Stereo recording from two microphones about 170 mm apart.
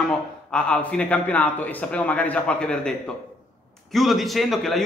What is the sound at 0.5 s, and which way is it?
A man's voice, 5° left (ahead or behind).